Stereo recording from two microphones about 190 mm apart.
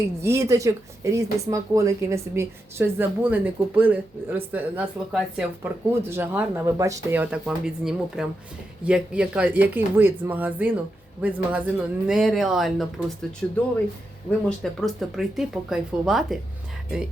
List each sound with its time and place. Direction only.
0.2 s speech: 15° right (ahead or behind); by 13.6 s 5° left (ahead or behind)
14.6 s speech: centre (ahead or behind)